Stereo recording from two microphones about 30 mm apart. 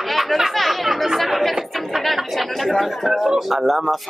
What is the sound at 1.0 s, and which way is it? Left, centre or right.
Chatter, centre.